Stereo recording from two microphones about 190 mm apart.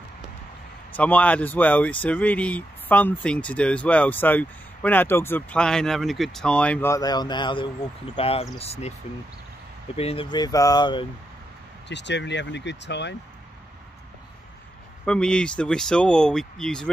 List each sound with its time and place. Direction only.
0.9 s speech: 10° left (ahead or behind); by 8.9 s 35° left (ahead or behind)
9.9 s speech: 30° left (ahead or behind)
11.9 s speech: 65° left (ahead or behind)
15.0 s speech: 5° left (ahead or behind)